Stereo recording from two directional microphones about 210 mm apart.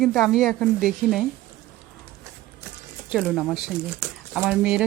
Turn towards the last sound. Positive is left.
turn(degrees=-5)  # may be behind; listen again after turning